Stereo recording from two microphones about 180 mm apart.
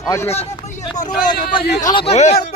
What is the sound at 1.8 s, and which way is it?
Speech, 25° left (ahead or behind).